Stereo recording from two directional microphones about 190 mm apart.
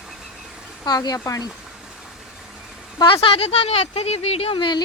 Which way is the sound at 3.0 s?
25° left (ahead or behind).